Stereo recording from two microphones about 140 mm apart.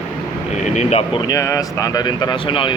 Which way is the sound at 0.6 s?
55° left (ahead or behind).